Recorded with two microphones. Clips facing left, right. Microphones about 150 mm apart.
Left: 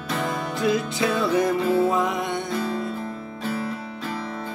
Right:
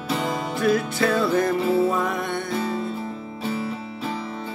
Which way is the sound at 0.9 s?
15° left (ahead or behind).